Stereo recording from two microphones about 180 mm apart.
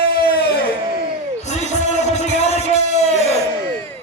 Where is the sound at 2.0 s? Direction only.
35° left (ahead or behind).